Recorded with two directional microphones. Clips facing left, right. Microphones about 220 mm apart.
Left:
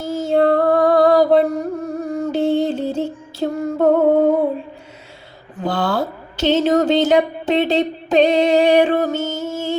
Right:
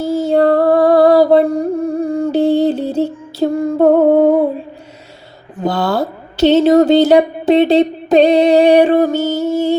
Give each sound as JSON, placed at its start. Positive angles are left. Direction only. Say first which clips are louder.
{"t": 0.2, "sound": "music", "louder": "right 2 dB", "side_deg": -35}
{"t": 5.6, "sound": "speech", "louder": "right 4 dB", "side_deg": -40}